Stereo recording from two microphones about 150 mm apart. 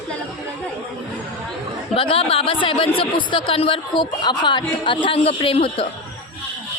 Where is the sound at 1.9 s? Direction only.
40° left (ahead or behind).